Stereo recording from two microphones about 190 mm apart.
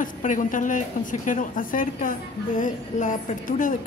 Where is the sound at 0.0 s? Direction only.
45° left (ahead or behind).